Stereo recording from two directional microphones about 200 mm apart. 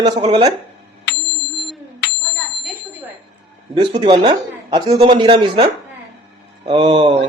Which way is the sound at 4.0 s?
25° right (ahead or behind).